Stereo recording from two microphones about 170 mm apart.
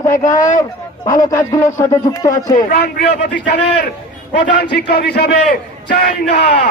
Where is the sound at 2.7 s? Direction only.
70° left (ahead or behind).